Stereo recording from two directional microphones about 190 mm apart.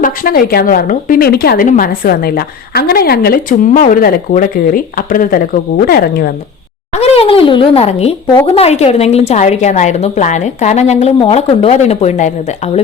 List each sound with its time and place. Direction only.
0.0 s speech: 50° left (ahead or behind)
6.9 s a woman's voice: 35° left (ahead or behind)